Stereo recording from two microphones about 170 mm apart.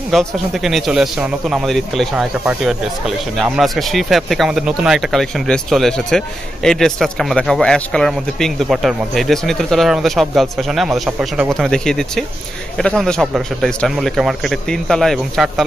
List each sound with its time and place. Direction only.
0.1 s speech: centre (ahead or behind)